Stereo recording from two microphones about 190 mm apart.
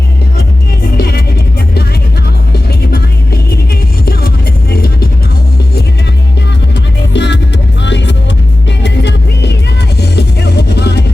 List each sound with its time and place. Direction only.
0.9 s music: 55° left (ahead or behind)
2.5 s music: 55° left (ahead or behind)
7.1 s music: 70° left (ahead or behind)